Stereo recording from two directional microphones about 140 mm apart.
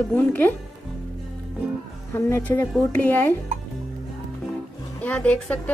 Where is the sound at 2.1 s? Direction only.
15° left (ahead or behind).